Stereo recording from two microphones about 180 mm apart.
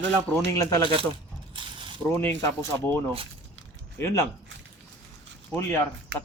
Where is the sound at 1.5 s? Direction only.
25° right (ahead or behind).